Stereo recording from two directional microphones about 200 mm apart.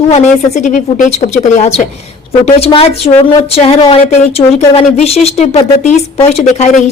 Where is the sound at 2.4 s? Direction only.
30° left (ahead or behind).